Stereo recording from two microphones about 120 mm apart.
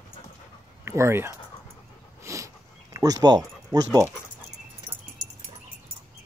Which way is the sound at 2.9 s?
30° right (ahead or behind).